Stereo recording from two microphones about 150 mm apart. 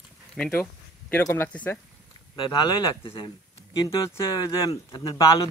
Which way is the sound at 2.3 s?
30° left (ahead or behind).